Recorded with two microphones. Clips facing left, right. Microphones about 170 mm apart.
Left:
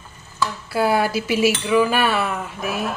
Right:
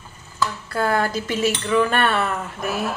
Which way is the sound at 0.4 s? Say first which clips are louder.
Left 2 dB; 10° left (ahead or behind).